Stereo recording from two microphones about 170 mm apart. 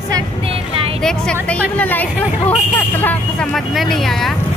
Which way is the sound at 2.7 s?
10° left (ahead or behind).